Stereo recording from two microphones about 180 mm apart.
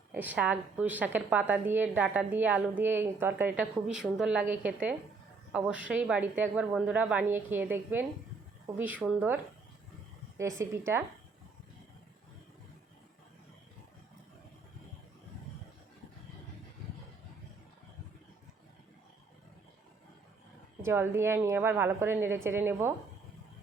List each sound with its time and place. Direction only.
0.1 s a woman's voice: 10° right (ahead or behind)
10.6 s a woman's voice: 15° right (ahead or behind)
20.8 s a woman's voice: 10° right (ahead or behind)